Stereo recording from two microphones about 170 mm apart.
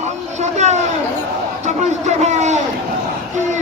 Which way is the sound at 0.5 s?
45° right (ahead or behind).